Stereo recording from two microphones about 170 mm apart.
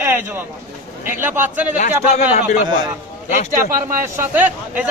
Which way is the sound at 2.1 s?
40° left (ahead or behind).